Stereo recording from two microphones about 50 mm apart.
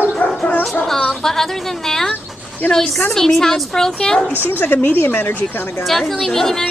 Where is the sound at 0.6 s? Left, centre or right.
Centre.